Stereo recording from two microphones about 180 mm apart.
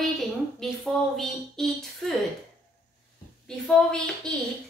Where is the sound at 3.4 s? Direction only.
5° left (ahead or behind).